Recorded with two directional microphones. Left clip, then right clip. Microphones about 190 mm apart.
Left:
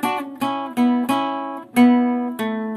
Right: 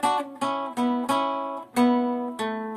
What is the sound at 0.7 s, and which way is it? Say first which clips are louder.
Guitar: left 5 dB; 20° left (ahead or behind).